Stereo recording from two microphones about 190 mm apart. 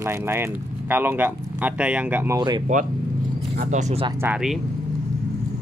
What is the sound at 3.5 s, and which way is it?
Speech, 45° right (ahead or behind).